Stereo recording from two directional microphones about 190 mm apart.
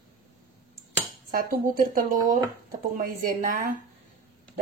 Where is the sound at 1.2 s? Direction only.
50° right (ahead or behind).